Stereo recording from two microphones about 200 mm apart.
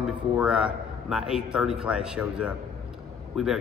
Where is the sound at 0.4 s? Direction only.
5° right (ahead or behind).